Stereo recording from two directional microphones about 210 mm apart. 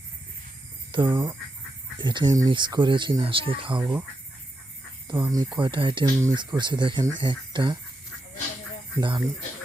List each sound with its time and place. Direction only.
0.9 s speech: 20° right (ahead or behind)
5.0 s speech: 15° right (ahead or behind)
9.0 s speech: 20° right (ahead or behind)